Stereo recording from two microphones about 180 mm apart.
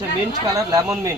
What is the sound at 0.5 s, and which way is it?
Speech, 20° right (ahead or behind).